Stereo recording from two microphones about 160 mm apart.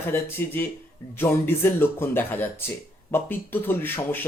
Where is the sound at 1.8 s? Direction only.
15° left (ahead or behind).